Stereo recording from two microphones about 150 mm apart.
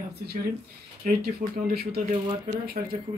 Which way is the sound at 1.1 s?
90° right.